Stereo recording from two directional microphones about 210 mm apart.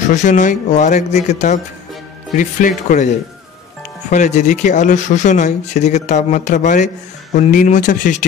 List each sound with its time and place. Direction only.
0.1 s speech: 35° left (ahead or behind)
4.1 s speech: 35° left (ahead or behind)